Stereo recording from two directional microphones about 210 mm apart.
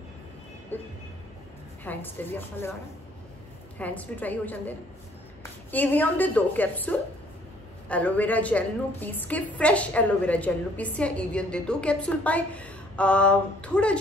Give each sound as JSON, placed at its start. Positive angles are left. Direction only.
{"t": 0.7, "sound": "a woman's voice", "side_deg": 10}
{"t": 3.7, "sound": "a woman's voice", "side_deg": 5}